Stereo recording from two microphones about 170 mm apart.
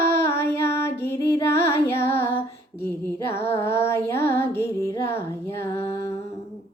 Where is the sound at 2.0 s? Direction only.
15° left (ahead or behind).